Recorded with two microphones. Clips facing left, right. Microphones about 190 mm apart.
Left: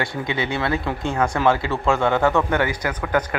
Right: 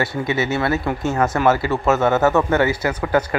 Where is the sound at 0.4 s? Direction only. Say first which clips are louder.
Right 2 dB; 5° right (ahead or behind).